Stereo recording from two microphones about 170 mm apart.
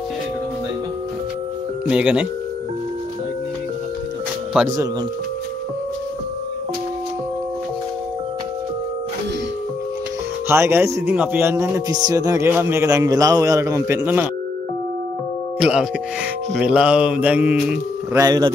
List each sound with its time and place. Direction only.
1.9 s a man's voice: 5° right (ahead or behind)
10.5 s a man's voice: 15° right (ahead or behind)
15.6 s a man's voice: 5° right (ahead or behind)
18.1 s speech: 20° right (ahead or behind)